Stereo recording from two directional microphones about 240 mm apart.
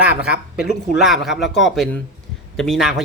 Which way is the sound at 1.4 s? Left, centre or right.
Left.